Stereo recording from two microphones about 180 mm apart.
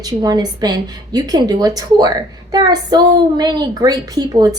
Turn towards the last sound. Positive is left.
turn(degrees=-20)  # may be behind; listen again after turning